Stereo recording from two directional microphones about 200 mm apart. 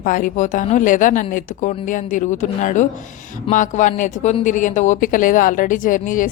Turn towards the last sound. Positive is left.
turn(degrees=40)  # may be behind; listen again after turning